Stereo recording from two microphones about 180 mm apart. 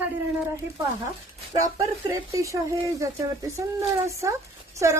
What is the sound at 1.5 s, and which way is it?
A woman's voice, 20° right (ahead or behind).